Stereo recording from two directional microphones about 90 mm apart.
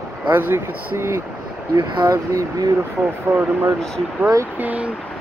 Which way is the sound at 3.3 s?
25° right (ahead or behind).